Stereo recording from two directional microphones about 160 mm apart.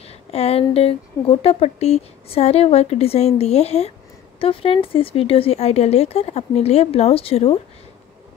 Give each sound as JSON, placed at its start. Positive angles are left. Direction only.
{"t": 0.0, "sound": "speech", "side_deg": 40}